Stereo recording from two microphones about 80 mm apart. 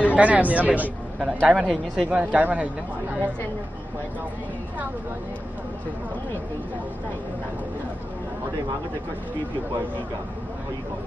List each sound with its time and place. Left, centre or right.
0.0 s speech: centre
1.4 s speech: centre
2.0 s speech: centre